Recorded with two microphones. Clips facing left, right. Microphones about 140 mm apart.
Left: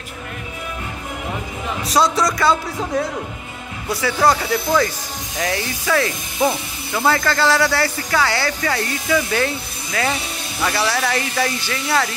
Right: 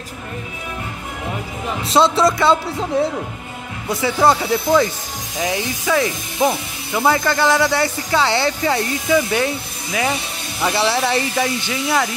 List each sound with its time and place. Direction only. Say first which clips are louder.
1.9 s speech: right 3 dB; 25° right (ahead or behind)
5.4 s speech: right 2 dB; 15° right (ahead or behind)